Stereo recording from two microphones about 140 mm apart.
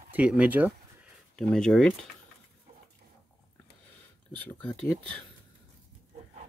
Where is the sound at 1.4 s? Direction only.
5° left (ahead or behind).